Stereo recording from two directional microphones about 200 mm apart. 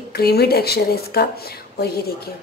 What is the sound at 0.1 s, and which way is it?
Speech, 50° left (ahead or behind).